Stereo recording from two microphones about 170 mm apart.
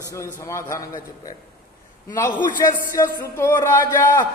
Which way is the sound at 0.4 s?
15° left (ahead or behind).